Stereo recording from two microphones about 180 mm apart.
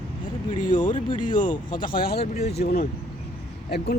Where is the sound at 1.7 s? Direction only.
55° left (ahead or behind).